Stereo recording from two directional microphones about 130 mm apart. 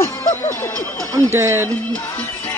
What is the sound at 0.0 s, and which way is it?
Music, 20° left (ahead or behind).